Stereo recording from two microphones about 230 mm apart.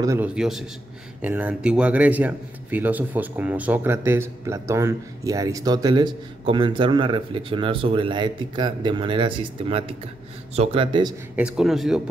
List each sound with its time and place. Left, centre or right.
0.0 s a man's voice: centre
11.3 s speech: centre